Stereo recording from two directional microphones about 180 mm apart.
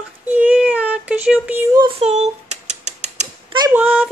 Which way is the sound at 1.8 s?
35° right (ahead or behind).